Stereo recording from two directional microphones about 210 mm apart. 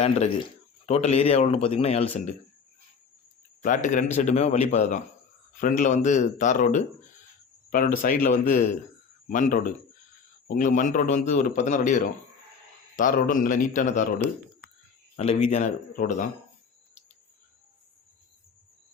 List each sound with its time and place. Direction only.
0.0 s a man's voice: 30° left (ahead or behind)
3.6 s speech: 35° left (ahead or behind)
15.1 s speech: 30° left (ahead or behind)